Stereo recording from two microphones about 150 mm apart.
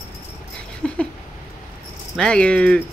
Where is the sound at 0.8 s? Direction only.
5° left (ahead or behind).